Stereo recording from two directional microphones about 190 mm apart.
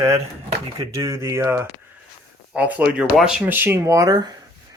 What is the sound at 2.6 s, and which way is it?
Speech, 5° right (ahead or behind).